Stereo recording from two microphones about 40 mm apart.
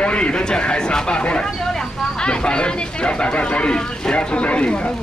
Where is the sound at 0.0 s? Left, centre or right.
Left.